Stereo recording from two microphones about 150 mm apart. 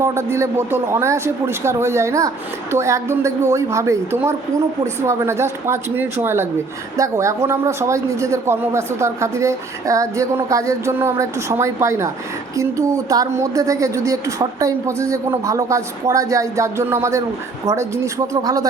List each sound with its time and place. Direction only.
0.0 s a man's voice: 15° right (ahead or behind)